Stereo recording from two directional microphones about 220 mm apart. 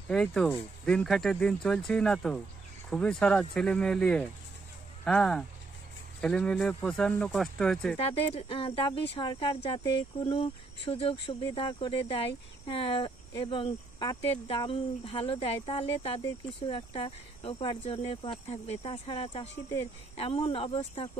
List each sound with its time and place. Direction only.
0.1 s speech: 5° left (ahead or behind)
8.1 s speech: 25° left (ahead or behind)